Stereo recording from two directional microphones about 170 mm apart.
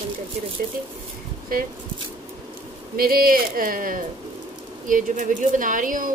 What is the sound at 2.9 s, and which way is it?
Speech, 60° right (ahead or behind).